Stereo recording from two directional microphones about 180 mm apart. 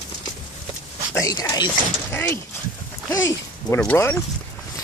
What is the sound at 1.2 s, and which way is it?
Speech, 20° left (ahead or behind).